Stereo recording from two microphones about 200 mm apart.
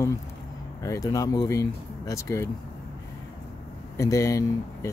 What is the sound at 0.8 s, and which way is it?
Speech, 15° left (ahead or behind).